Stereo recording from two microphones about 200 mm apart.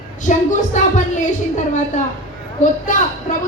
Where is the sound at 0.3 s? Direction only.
35° left (ahead or behind).